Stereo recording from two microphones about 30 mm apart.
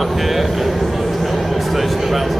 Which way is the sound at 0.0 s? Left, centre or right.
Centre.